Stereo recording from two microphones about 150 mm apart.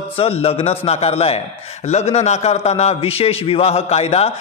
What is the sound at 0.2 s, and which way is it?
A man's voice, 40° left (ahead or behind).